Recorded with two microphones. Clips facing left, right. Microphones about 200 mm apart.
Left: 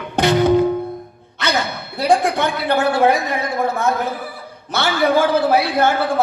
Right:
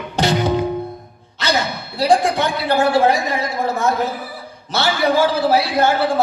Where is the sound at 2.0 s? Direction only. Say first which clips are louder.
Right 1 dB; 55° left (ahead or behind).